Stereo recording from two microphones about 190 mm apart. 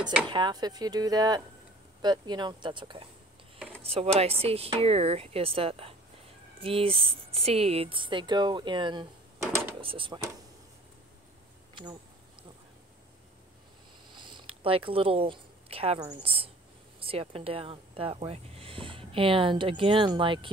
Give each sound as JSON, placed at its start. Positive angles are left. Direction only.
{"t": 0.3, "sound": "speech", "side_deg": -20}
{"t": 11.7, "sound": "speech", "side_deg": -20}
{"t": 14.1, "sound": "a sound", "side_deg": -25}
{"t": 16.0, "sound": "speech", "side_deg": -25}